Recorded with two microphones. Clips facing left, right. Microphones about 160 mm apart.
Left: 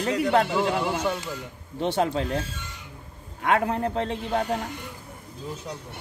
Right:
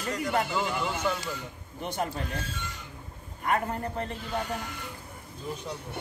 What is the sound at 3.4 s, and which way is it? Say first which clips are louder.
A man's voice: left 6 dB; 90° left.